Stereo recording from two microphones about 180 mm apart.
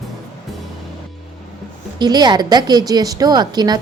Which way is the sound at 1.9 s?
25° right (ahead or behind).